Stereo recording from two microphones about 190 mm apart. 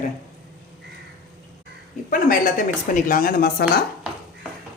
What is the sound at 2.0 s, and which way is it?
Speech, 45° left (ahead or behind).